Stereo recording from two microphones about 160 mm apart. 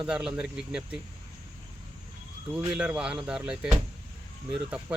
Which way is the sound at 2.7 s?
5° right (ahead or behind).